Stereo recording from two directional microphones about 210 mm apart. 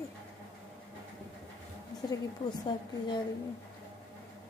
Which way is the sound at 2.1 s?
20° left (ahead or behind).